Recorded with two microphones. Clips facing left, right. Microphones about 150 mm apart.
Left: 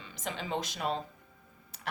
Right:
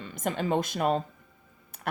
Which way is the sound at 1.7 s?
55° right (ahead or behind).